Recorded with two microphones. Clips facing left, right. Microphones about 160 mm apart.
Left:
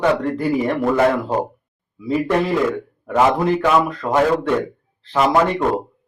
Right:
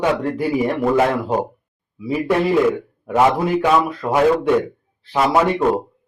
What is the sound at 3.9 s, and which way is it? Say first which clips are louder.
Speech: right 1 dB; 10° right (ahead or behind).